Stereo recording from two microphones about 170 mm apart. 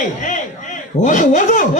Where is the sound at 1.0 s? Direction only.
50° left (ahead or behind).